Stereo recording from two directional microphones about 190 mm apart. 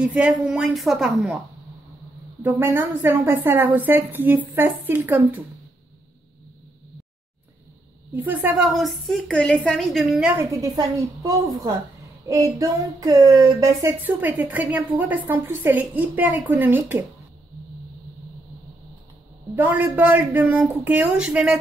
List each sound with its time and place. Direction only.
0.0 s a woman's voice: 5° right (ahead or behind)
2.4 s a woman's voice: 10° right (ahead or behind)
8.2 s a woman's voice: 10° right (ahead or behind)
10.6 s a woman's voice: 15° right (ahead or behind)
19.5 s a woman's voice: 10° right (ahead or behind)